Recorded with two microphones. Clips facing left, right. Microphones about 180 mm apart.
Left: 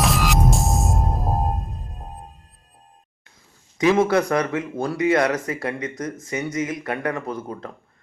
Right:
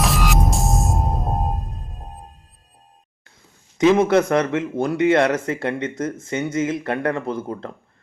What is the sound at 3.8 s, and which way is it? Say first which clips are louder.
Speech: right 3 dB; 20° right (ahead or behind).